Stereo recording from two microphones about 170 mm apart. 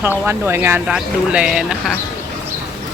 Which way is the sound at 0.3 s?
15° right (ahead or behind).